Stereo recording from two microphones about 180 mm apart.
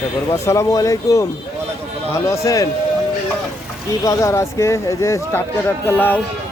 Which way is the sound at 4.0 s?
20° left (ahead or behind).